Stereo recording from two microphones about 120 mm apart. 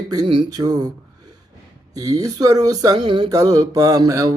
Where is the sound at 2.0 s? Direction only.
30° right (ahead or behind).